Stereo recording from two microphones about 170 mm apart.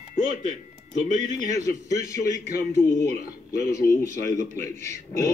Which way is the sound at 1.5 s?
20° left (ahead or behind).